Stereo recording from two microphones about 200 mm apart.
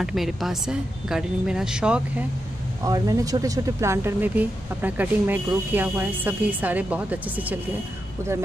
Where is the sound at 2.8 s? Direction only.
15° right (ahead or behind).